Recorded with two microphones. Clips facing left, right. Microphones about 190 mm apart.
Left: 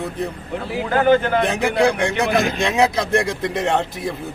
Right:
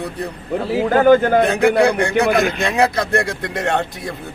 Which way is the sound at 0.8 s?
45° right (ahead or behind).